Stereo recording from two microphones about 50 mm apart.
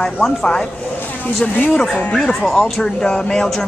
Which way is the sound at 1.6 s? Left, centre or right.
Centre.